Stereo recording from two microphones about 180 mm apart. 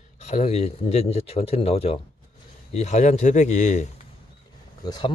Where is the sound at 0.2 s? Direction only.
40° left (ahead or behind).